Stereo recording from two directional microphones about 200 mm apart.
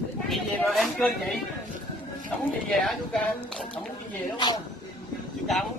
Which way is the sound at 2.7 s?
Centre (ahead or behind).